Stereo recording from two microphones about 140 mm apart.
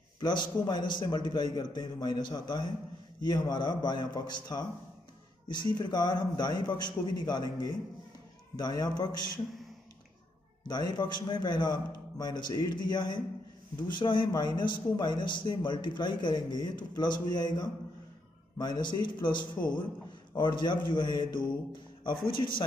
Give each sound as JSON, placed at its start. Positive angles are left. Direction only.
{"t": 0.2, "sound": "a man's voice", "side_deg": 30}
{"t": 10.7, "sound": "speech", "side_deg": 30}